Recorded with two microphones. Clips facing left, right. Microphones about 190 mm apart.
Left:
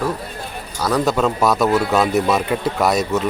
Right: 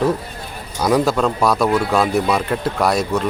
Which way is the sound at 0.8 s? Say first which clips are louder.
Right 2 dB; 10° right (ahead or behind).